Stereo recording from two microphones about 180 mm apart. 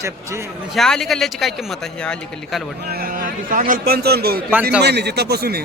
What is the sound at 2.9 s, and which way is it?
A man's voice, 55° right (ahead or behind).